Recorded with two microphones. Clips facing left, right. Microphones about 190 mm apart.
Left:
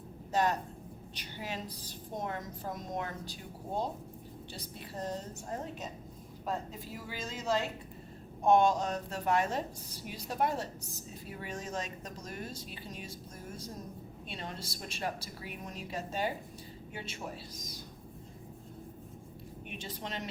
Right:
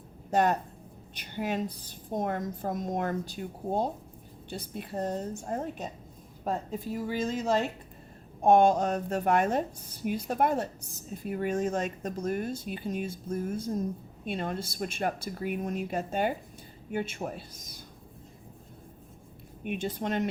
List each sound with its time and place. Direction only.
0.3 s a woman's voice: 55° right (ahead or behind)
14.3 s a woman's voice: 50° right (ahead or behind)
19.6 s a woman's voice: 55° right (ahead or behind)